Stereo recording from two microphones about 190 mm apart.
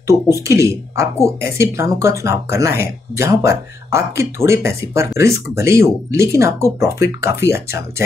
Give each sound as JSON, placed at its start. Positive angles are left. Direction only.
{"t": 0.0, "sound": "speech", "side_deg": -15}